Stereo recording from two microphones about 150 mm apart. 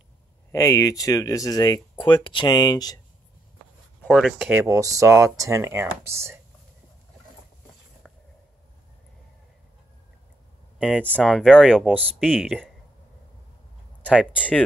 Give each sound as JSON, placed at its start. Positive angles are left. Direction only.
{"t": 0.5, "sound": "speech", "side_deg": 20}
{"t": 4.1, "sound": "speech", "side_deg": 0}
{"t": 4.6, "sound": "speech", "side_deg": -20}
{"t": 8.0, "sound": "a sound", "side_deg": 5}
{"t": 11.2, "sound": "speech", "side_deg": 0}
{"t": 14.1, "sound": "speech", "side_deg": -5}